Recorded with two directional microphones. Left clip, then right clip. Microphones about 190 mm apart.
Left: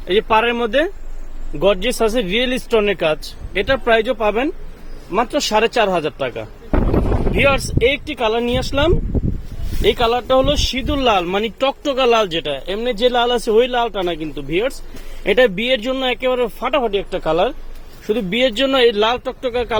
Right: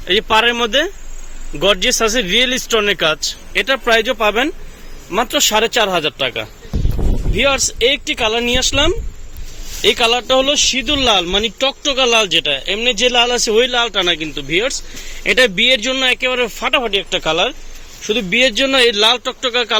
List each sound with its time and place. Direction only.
0.1 s a man's voice: 5° left (ahead or behind); by 12.5 s 25° left (ahead or behind)
12.5 s a man's voice: 10° left (ahead or behind)
18.1 s a man's voice: 15° left (ahead or behind)